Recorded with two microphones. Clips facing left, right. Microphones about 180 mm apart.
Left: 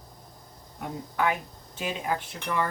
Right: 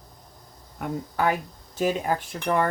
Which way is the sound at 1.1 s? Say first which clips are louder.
Right 2 dB; 40° right (ahead or behind).